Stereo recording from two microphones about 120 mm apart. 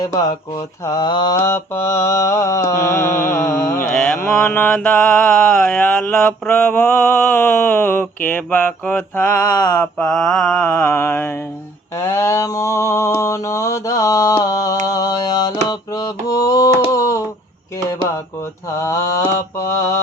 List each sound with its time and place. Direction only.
0.0 s mantra: 35° left (ahead or behind)
1.4 s mantra: 20° left (ahead or behind)
9.6 s mantra: 30° left (ahead or behind)
9.8 s mantra: 10° left (ahead or behind); by 16.7 s 30° left (ahead or behind)
16.9 s a sound: 25° left (ahead or behind)
18.8 s mantra: 30° left (ahead or behind)